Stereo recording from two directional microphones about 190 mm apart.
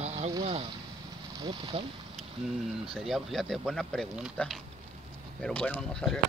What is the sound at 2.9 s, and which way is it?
Speech, centre (ahead or behind).